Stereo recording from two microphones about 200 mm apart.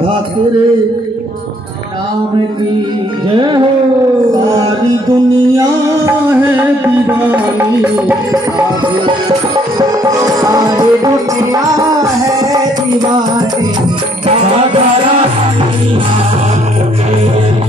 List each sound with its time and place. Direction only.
3.3 s music: 25° right (ahead or behind); by 8.4 s 10° right (ahead or behind)
9.8 s music: 15° right (ahead or behind)